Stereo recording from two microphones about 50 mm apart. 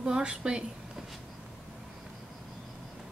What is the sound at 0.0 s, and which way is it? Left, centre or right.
Speech, centre.